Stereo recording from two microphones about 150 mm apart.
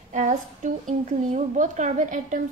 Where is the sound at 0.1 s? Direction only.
55° right (ahead or behind).